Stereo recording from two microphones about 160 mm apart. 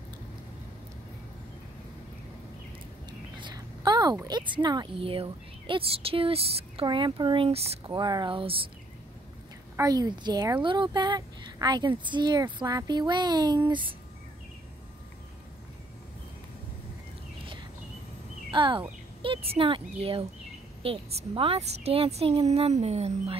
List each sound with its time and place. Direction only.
3.1 s speech: 30° right (ahead or behind)
9.8 s a woman's voice: 25° right (ahead or behind)
18.5 s a woman's voice: 30° right (ahead or behind)